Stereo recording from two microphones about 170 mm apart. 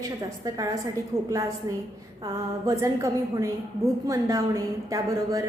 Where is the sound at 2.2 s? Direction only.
20° right (ahead or behind).